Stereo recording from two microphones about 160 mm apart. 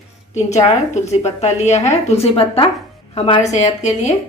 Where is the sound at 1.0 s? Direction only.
45° left (ahead or behind).